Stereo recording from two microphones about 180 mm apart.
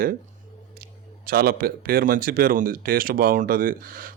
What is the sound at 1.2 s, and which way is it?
Speech, 55° right (ahead or behind).